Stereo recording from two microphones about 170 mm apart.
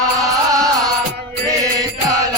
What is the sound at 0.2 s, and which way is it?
Music, 20° right (ahead or behind).